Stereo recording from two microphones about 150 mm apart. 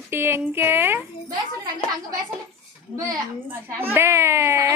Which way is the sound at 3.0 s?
20° right (ahead or behind).